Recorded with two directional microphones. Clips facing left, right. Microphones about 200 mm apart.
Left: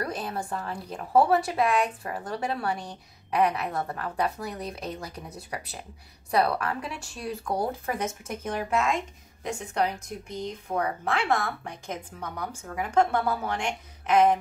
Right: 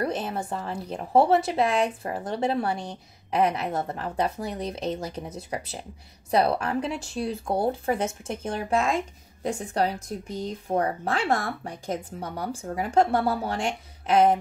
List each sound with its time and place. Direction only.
0.0 s a woman's voice: 25° right (ahead or behind)